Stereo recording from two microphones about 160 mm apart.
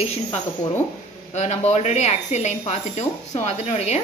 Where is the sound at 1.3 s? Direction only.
45° left (ahead or behind).